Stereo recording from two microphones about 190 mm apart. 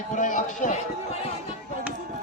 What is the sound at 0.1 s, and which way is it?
A man's voice, 40° left (ahead or behind).